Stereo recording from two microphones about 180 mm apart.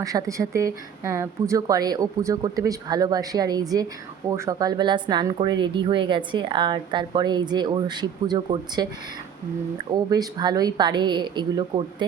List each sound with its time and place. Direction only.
0.0 s speech: 20° right (ahead or behind)
9.9 s speech: 20° right (ahead or behind)